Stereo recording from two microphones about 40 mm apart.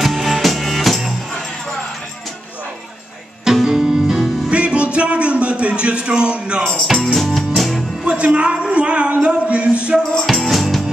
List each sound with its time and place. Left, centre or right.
0.0 s music: centre
3.6 s music: centre
4.5 s music: right
6.8 s music: centre
8.0 s speech: right
10.2 s music: centre